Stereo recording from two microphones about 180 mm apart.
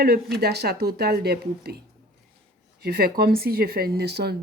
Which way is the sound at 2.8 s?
60° right (ahead or behind).